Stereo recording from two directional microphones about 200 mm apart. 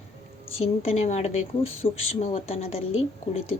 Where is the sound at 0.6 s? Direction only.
30° left (ahead or behind).